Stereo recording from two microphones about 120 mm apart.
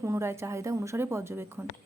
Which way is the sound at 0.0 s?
20° right (ahead or behind).